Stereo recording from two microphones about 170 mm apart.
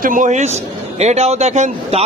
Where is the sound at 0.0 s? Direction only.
50° right (ahead or behind).